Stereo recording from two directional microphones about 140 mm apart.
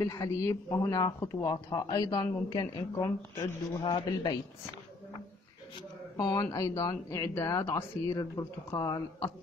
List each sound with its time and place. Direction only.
0.0 s speech: 25° left (ahead or behind)
3.2 s speech: 15° left (ahead or behind)
3.8 s a man's voice: 30° left (ahead or behind)
5.8 s speech: 30° left (ahead or behind)